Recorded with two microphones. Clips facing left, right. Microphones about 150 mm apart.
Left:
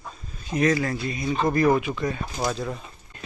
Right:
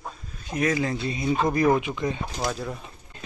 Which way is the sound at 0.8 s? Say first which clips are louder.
Even; 20° right (ahead or behind).